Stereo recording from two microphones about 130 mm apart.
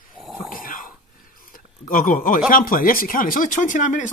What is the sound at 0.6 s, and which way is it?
Cough, 90° left.